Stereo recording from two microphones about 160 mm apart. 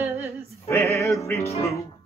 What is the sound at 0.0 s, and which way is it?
A capella, 15° right (ahead or behind).